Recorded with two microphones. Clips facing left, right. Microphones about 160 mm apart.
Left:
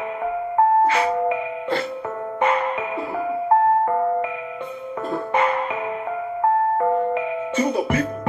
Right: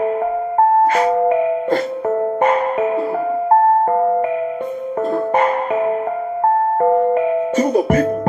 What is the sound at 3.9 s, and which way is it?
Music, 40° right (ahead or behind).